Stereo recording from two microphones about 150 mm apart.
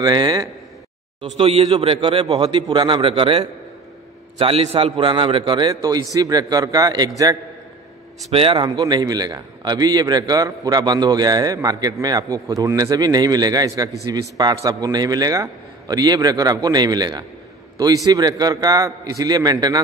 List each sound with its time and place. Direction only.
0.0 s a man's voice: 30° right (ahead or behind)
1.2 s a man's voice: 45° right (ahead or behind); by 7.3 s 25° right (ahead or behind)
8.3 s a man's voice: 40° right (ahead or behind)
8.6 s a man's voice: 30° right (ahead or behind)